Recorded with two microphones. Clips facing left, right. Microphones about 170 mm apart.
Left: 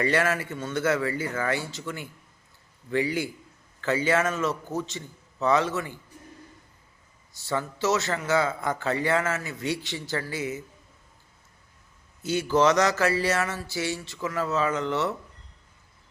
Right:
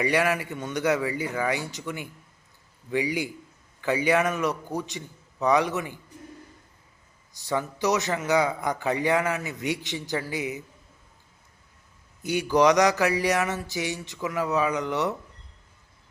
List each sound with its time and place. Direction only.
0.0 s a man's voice: 15° right (ahead or behind)
7.3 s a man's voice: 15° right (ahead or behind)
12.2 s a man's voice: 15° right (ahead or behind)